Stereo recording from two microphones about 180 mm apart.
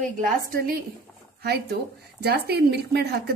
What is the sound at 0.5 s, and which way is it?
A woman's voice, 60° right (ahead or behind).